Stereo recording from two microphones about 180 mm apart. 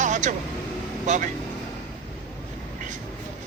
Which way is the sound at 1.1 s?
40° right (ahead or behind).